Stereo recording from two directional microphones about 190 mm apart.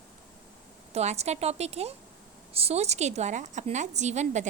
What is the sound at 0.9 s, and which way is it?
A woman's voice, 35° right (ahead or behind).